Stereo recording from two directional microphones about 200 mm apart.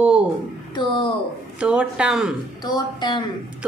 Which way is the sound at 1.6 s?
5° right (ahead or behind).